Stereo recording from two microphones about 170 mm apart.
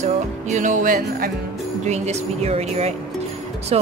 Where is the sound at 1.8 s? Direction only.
40° right (ahead or behind).